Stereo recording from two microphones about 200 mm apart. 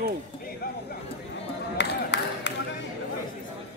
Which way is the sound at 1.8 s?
60° left (ahead or behind).